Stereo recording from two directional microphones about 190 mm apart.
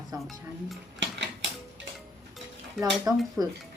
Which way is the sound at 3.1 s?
20° right (ahead or behind).